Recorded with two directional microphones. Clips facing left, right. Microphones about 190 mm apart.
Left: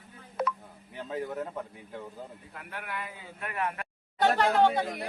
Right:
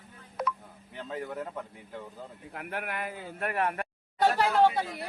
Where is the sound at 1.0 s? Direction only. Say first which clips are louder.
Left 2 dB; 15° left (ahead or behind).